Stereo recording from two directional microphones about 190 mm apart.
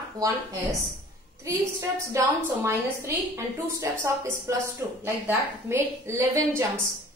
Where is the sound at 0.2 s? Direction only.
20° right (ahead or behind).